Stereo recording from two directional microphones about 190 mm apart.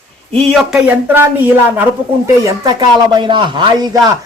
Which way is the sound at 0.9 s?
10° right (ahead or behind).